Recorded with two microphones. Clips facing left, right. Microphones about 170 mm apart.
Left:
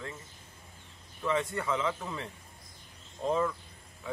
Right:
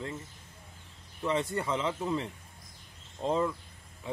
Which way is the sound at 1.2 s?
30° right (ahead or behind).